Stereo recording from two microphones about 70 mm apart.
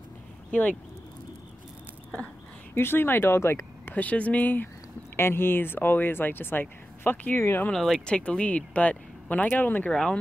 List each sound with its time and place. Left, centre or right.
0.5 s speech: left
2.7 s speech: left
3.9 s speech: left
5.1 s speech: left
7.7 s speech: centre; by 9.8 s left
9.8 s speech: centre